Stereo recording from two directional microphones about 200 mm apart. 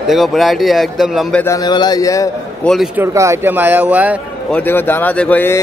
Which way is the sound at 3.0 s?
15° right (ahead or behind).